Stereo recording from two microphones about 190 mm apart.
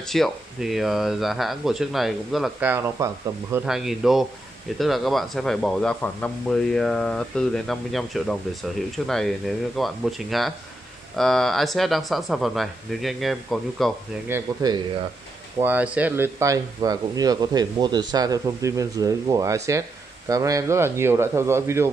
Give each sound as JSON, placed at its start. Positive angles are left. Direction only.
{"t": 0.0, "sound": "speech", "side_deg": 0}
{"t": 14.3, "sound": "speech", "side_deg": -20}
{"t": 15.6, "sound": "speech", "side_deg": -10}